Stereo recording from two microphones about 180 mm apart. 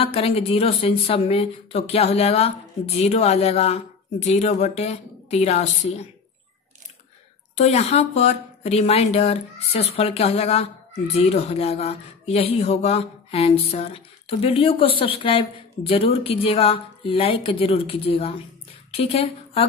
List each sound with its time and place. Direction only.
0.0 s speech: 30° left (ahead or behind)
7.5 s speech: 35° left (ahead or behind)